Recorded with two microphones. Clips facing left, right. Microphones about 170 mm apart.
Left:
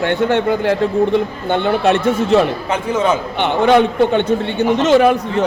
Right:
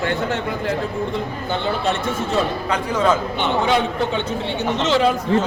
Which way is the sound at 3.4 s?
60° left (ahead or behind).